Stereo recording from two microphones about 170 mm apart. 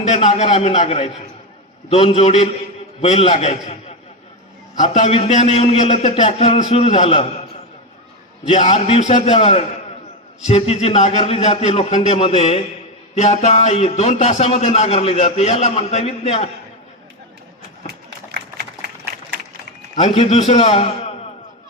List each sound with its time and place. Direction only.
0.0 s a man's voice: 40° left (ahead or behind)
8.4 s a man's voice: 40° left (ahead or behind)
18.3 s a sound: 75° right (ahead or behind)
20.0 s a man's voice: 35° left (ahead or behind)